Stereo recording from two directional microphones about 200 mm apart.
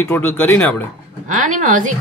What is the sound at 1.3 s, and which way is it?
Speech, 40° right (ahead or behind).